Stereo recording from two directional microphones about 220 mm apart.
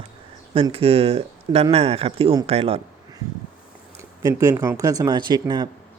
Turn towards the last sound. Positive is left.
turn(degrees=-20)  # may be behind; listen again after turning